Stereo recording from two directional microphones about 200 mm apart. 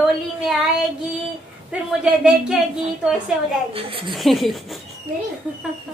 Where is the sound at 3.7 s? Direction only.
25° right (ahead or behind).